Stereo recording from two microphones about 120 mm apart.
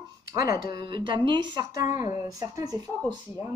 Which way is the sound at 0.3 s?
30° right (ahead or behind).